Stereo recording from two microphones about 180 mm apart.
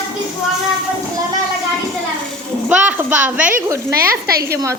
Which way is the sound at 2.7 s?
10° right (ahead or behind).